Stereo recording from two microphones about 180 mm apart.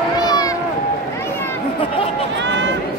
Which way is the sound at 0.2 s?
20° left (ahead or behind).